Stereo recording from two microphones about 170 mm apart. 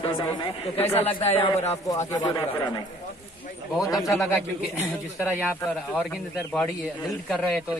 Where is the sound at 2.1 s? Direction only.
20° left (ahead or behind).